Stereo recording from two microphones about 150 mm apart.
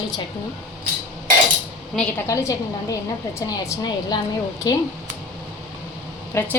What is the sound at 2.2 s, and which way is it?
A woman's voice, 20° left (ahead or behind).